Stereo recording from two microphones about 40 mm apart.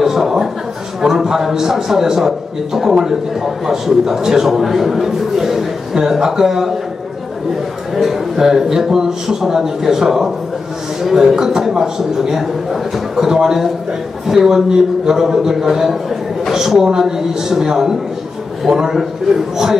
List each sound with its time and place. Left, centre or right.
0.0 s a man's voice: centre
7.9 s a man's voice: centre
18.9 s a man's voice: centre